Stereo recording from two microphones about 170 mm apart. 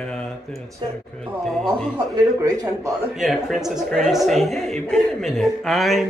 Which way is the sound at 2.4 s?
20° right (ahead or behind).